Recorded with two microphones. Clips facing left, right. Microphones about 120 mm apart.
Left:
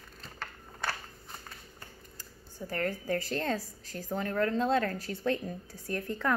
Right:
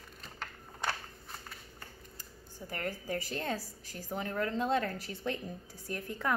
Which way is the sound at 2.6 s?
20° right (ahead or behind).